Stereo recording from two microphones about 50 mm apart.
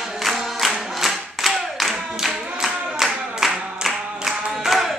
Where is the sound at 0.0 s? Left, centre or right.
Centre.